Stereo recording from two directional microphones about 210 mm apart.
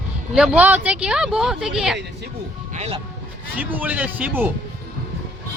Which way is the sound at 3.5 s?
10° right (ahead or behind).